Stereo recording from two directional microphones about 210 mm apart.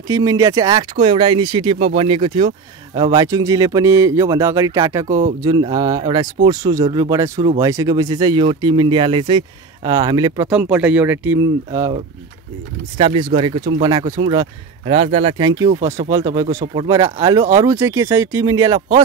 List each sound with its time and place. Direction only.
0.1 s speech: 15° right (ahead or behind)
10.5 s speech: 5° right (ahead or behind)
12.9 s speech: 25° right (ahead or behind)